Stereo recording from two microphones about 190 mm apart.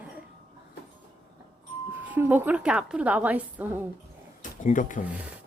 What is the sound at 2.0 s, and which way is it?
A woman's voice, 10° right (ahead or behind).